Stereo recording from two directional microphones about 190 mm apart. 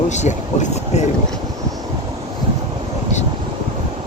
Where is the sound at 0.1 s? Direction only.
40° left (ahead or behind).